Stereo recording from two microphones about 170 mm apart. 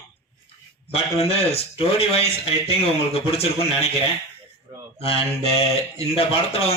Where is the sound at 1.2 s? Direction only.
35° left (ahead or behind).